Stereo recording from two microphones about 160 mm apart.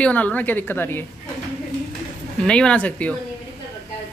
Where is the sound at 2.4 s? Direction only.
5° left (ahead or behind).